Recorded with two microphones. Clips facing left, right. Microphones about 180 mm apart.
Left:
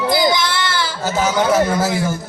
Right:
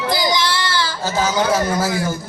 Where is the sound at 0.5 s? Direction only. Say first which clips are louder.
Even; 20° left (ahead or behind).